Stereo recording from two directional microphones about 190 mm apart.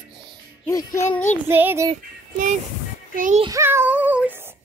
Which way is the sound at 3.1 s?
45° right (ahead or behind).